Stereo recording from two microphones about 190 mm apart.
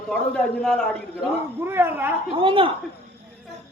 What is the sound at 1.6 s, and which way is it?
Speech, 10° right (ahead or behind).